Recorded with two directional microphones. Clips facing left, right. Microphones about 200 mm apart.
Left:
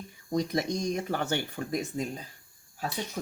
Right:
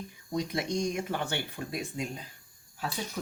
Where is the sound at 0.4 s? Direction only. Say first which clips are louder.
Left 1 dB; 40° left (ahead or behind).